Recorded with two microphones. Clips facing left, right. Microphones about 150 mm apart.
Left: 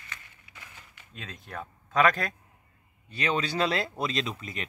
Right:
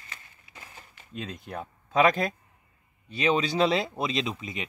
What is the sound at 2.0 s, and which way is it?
Speech, 10° right (ahead or behind).